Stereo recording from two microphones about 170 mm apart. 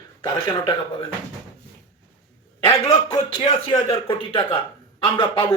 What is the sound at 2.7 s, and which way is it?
A man's voice, 20° left (ahead or behind).